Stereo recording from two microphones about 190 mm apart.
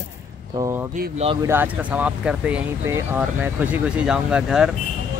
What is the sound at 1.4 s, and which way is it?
Speech, 10° right (ahead or behind).